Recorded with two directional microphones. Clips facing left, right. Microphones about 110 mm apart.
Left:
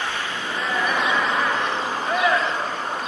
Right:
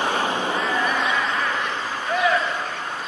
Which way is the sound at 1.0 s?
Centre (ahead or behind).